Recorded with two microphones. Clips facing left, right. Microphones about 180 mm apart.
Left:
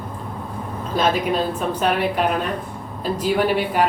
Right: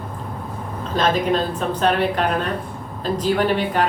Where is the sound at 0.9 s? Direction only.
10° left (ahead or behind).